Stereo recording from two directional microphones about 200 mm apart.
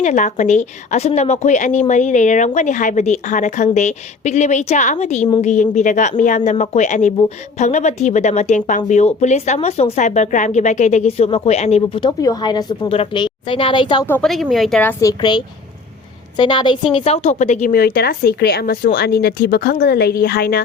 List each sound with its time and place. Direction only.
0.0 s a woman's voice: 35° left (ahead or behind)
12.0 s a woman's voice: 20° left (ahead or behind)
14.1 s speech: centre (ahead or behind)
15.2 s a woman's voice: 20° left (ahead or behind); by 20.6 s 50° left (ahead or behind)